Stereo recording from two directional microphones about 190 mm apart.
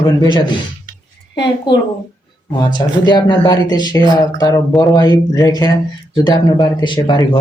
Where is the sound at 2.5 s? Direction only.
25° left (ahead or behind).